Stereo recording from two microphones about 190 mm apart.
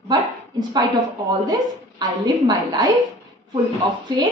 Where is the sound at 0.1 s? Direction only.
20° right (ahead or behind).